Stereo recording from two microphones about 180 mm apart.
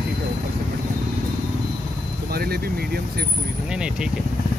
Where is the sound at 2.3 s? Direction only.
60° right (ahead or behind).